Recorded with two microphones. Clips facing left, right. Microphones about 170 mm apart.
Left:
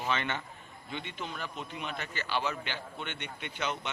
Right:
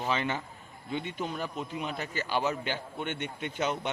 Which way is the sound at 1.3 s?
10° right (ahead or behind).